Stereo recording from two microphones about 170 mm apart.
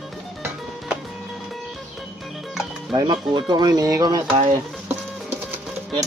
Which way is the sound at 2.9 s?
25° right (ahead or behind).